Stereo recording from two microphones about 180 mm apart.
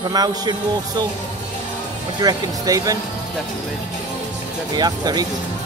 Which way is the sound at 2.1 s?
20° right (ahead or behind).